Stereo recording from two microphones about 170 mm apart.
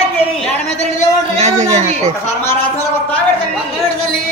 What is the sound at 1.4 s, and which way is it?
Speech, 40° right (ahead or behind).